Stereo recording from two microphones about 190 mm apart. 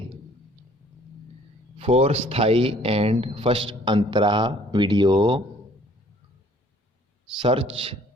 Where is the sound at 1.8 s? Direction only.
30° right (ahead or behind).